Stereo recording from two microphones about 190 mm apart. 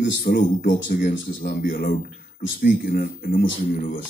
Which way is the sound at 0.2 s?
45° left (ahead or behind).